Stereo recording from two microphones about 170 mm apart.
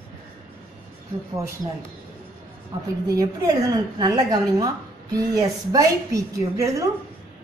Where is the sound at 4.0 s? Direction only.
25° right (ahead or behind).